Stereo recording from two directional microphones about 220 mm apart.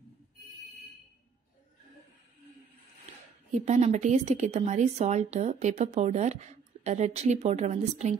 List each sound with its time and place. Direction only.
3.5 s a woman's voice: 30° right (ahead or behind)